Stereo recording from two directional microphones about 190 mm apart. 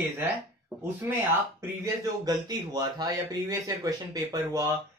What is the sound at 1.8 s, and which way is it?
Speech, 20° right (ahead or behind).